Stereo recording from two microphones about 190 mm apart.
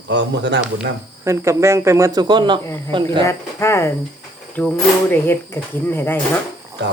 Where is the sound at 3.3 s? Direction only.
15° left (ahead or behind).